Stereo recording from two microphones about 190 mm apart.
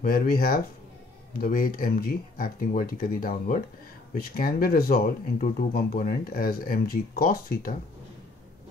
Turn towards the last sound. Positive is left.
turn(degrees=50)  # may be behind; listen again after turning